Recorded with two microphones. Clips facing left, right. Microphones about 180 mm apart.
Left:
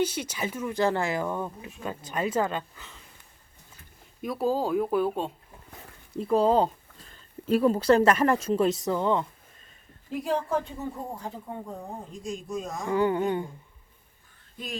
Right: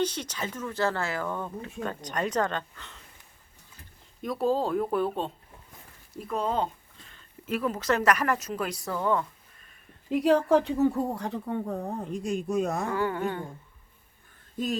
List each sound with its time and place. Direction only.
0.0 s speech: 10° left (ahead or behind)
4.2 s speech: 5° left (ahead or behind)
6.1 s speech: 30° left (ahead or behind)
10.1 s a woman's voice: 75° right (ahead or behind)
12.9 s speech: 20° left (ahead or behind)